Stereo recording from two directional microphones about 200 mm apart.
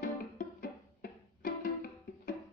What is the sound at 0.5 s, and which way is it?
Music, 50° left (ahead or behind).